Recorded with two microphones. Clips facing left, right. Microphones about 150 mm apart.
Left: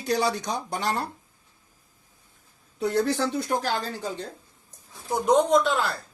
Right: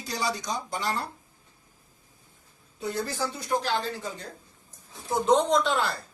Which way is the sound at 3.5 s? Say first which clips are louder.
Left 1 dB; 45° left (ahead or behind).